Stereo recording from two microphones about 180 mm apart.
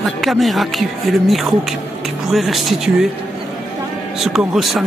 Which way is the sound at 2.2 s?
Centre (ahead or behind).